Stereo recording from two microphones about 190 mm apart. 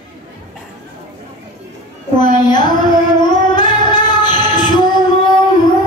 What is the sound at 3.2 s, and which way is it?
Female singing, 25° left (ahead or behind).